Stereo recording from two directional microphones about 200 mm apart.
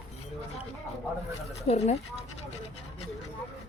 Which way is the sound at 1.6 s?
35° left (ahead or behind).